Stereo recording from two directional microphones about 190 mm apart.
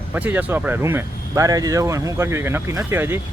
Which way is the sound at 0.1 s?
10° right (ahead or behind).